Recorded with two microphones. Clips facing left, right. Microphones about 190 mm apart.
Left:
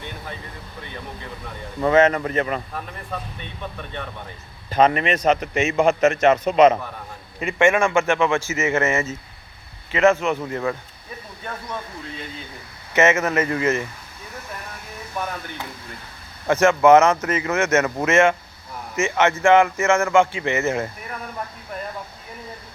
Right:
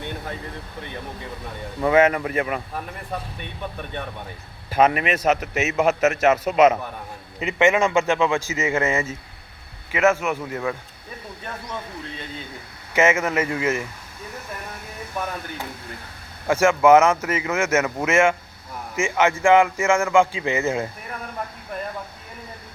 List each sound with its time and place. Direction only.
1.8 s speech: 10° right (ahead or behind)
4.7 s a man's voice: 5° right (ahead or behind)
7.3 s speech: 20° right (ahead or behind)
12.9 s speech: 10° right (ahead or behind)
16.5 s speech: 10° right (ahead or behind)